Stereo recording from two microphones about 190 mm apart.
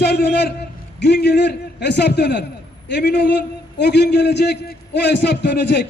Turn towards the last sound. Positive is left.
turn(degrees=65)  # may be behind; listen again after turning